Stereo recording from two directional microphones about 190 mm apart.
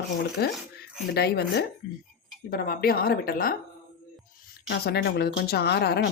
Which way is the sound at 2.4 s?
50° left (ahead or behind).